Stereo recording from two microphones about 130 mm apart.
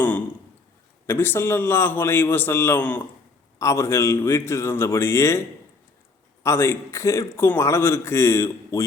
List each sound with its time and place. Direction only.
1.0 s a man's voice: 15° left (ahead or behind)
6.4 s a man's voice: 20° left (ahead or behind)